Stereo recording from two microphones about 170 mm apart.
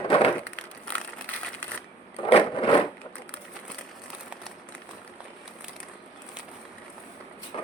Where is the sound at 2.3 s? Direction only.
30° left (ahead or behind).